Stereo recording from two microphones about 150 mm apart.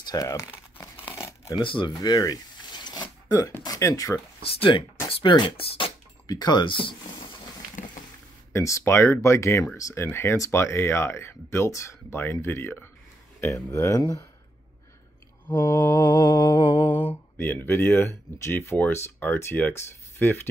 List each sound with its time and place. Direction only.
0.0 s speech: 25° left (ahead or behind)
0.7 s crumpling: 15° left (ahead or behind)
1.6 s speech: 35° left (ahead or behind)
5.0 s speech: 30° left (ahead or behind)
8.0 s a sound: 60° left (ahead or behind)
8.5 s speech: 20° left (ahead or behind)
15.4 s mantra: 15° left (ahead or behind)
17.1 s speech: 15° left (ahead or behind)